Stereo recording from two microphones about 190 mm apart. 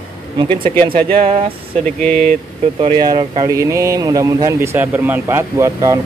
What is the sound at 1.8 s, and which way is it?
Speech, 5° left (ahead or behind).